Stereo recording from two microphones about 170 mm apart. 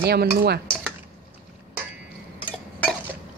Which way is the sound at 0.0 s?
70° right (ahead or behind).